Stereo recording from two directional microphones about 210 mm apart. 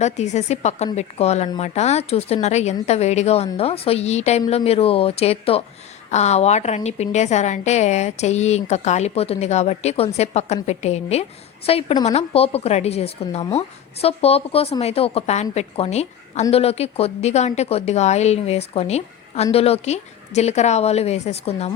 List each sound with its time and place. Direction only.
0.0 s a woman's voice: 30° left (ahead or behind)